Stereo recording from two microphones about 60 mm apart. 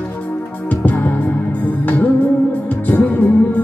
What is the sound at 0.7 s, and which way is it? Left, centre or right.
Music, left.